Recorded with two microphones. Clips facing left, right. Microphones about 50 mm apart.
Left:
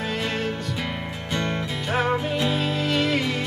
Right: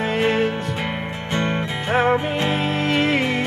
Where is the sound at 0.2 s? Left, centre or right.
Right.